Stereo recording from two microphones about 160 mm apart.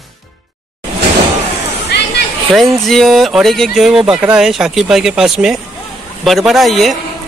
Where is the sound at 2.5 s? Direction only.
Centre (ahead or behind).